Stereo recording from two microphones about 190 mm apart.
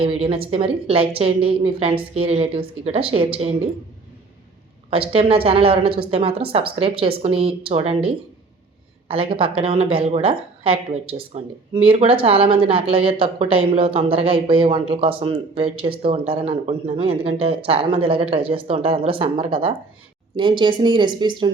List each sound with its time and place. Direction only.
0.0 s speech: 30° right (ahead or behind)
4.9 s speech: 30° right (ahead or behind)